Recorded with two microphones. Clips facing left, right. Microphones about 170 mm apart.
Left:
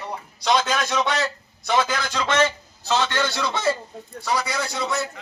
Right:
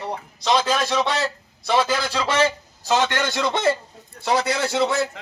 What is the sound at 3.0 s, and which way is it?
Speech, 50° right (ahead or behind).